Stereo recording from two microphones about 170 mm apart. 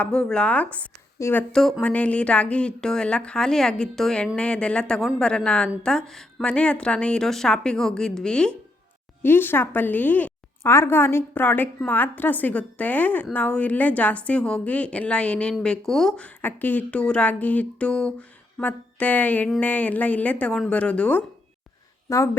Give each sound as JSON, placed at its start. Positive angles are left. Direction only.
{"t": 0.0, "sound": "a woman's voice", "side_deg": 5}
{"t": 22.1, "sound": "a woman's voice", "side_deg": 20}